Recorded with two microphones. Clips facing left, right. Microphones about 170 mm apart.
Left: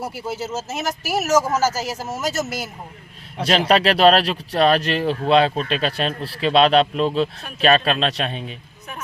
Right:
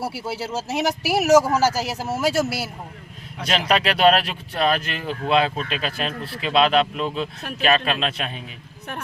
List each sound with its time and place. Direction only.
0.0 s speech: 10° right (ahead or behind)
3.3 s speech: 30° left (ahead or behind)